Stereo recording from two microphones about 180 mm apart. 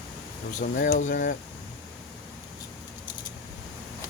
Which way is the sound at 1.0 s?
45° left (ahead or behind).